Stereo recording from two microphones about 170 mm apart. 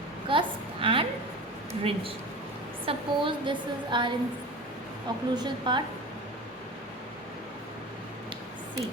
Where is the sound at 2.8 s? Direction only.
30° right (ahead or behind).